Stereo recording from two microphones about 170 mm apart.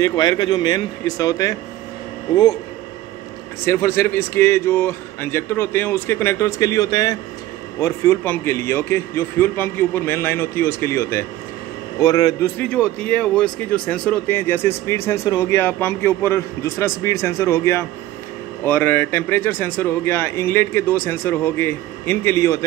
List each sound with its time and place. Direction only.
0.0 s speech: 20° left (ahead or behind)
3.6 s a man's voice: 15° left (ahead or behind)